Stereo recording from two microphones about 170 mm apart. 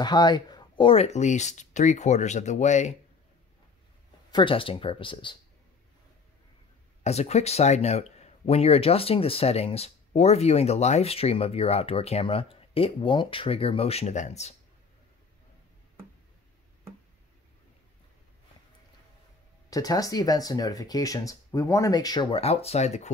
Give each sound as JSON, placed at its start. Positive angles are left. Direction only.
{"t": 0.0, "sound": "speech", "side_deg": 25}
{"t": 4.3, "sound": "speech", "side_deg": 30}
{"t": 7.0, "sound": "speech", "side_deg": 40}
{"t": 19.7, "sound": "speech", "side_deg": 20}